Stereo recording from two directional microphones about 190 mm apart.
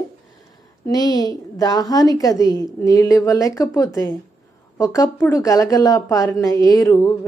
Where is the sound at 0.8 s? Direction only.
20° left (ahead or behind).